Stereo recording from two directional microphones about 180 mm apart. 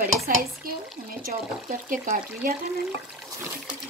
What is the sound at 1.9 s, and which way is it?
Speech, 50° right (ahead or behind).